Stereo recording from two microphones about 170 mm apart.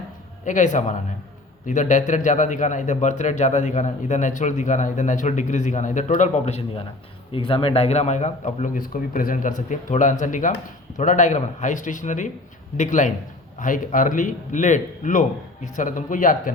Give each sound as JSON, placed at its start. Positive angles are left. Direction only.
{"t": 0.4, "sound": "a man's voice", "side_deg": 45}